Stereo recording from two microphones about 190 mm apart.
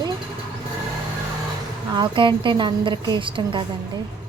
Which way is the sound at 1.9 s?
25° right (ahead or behind).